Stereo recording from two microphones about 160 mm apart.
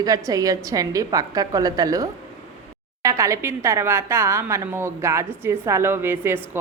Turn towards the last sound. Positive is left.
turn(degrees=-15)  # may be behind; listen again after turning